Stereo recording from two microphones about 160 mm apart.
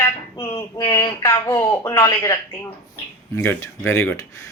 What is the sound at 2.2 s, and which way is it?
Speech, 15° left (ahead or behind).